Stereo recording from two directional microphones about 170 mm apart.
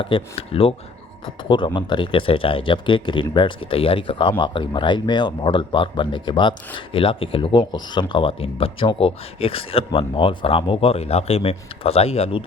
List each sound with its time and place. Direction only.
0.0 s speech: 30° left (ahead or behind)